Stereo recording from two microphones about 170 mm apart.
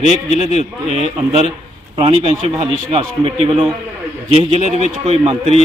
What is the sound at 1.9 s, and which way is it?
A man's voice, 30° right (ahead or behind).